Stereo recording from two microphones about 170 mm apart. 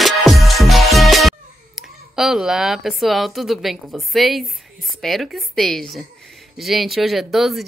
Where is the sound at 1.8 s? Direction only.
Centre (ahead or behind).